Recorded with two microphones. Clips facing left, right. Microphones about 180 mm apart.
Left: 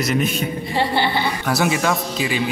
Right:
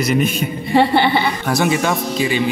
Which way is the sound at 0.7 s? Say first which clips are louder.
Right 7 dB; 60° right (ahead or behind).